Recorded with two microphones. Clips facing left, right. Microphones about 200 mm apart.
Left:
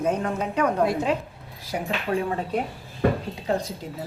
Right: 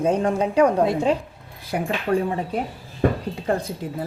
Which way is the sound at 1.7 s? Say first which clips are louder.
Right 4 dB; 55° right (ahead or behind).